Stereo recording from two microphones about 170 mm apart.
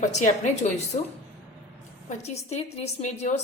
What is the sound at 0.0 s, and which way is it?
A woman's voice, 45° left (ahead or behind).